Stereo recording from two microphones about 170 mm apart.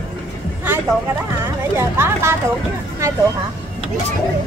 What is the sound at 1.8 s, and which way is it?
Speech, 15° right (ahead or behind).